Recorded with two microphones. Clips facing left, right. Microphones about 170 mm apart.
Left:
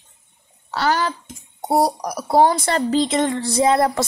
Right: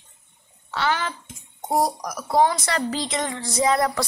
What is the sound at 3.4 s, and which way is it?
Music, 30° left (ahead or behind).